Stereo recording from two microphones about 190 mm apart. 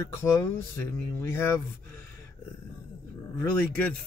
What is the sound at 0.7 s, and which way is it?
Speech, 10° left (ahead or behind).